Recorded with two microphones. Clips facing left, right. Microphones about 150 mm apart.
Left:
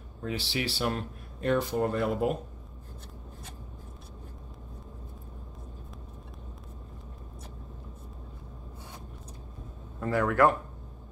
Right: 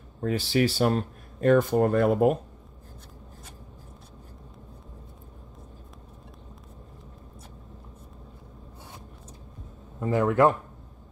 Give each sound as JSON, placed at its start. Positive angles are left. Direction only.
{"t": 0.2, "sound": "speech", "side_deg": -45}
{"t": 9.9, "sound": "speech", "side_deg": -20}